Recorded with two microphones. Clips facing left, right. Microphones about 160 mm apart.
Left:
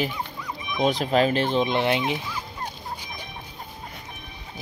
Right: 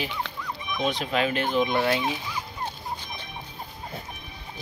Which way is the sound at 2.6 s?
10° left (ahead or behind).